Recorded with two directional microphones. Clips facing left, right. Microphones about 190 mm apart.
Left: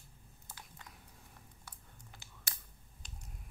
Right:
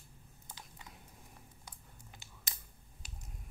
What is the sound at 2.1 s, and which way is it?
Computer keyboard, 15° right (ahead or behind).